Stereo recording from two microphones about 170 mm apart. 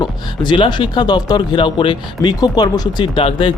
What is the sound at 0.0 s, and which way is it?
Speech, 30° left (ahead or behind).